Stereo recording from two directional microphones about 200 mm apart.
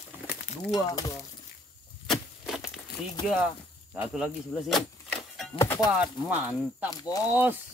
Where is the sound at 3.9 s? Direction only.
5° right (ahead or behind).